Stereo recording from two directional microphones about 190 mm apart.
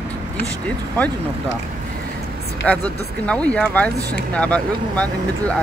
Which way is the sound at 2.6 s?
5° left (ahead or behind).